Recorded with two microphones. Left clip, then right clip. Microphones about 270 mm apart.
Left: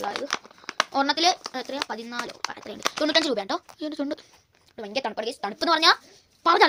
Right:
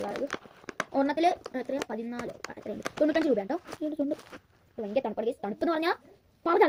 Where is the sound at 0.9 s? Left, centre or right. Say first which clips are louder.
Left 3 dB; left.